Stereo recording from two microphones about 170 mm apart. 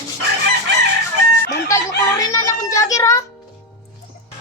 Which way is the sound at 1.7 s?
20° left (ahead or behind).